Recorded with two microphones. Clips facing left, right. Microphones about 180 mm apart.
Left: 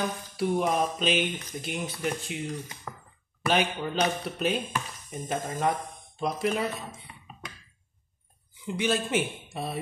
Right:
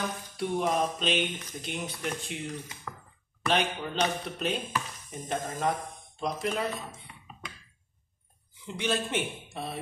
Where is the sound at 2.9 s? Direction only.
15° left (ahead or behind).